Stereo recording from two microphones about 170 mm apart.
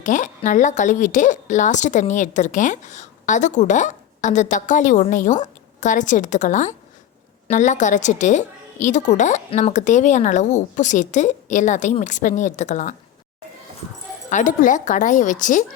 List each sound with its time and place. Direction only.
0.0 s a woman's voice: 45° left (ahead or behind)
14.3 s a woman's voice: 45° left (ahead or behind)